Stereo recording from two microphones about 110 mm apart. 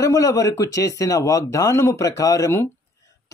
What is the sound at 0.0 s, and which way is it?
Speech, 30° left (ahead or behind).